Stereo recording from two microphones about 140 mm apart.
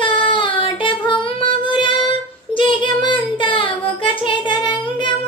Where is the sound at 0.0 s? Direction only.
35° left (ahead or behind).